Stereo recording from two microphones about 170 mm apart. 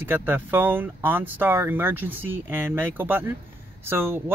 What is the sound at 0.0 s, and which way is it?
Speech, 10° right (ahead or behind).